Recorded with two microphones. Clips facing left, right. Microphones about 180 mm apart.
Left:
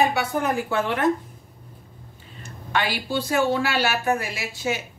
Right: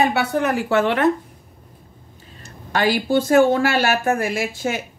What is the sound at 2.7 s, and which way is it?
Speech, 45° right (ahead or behind).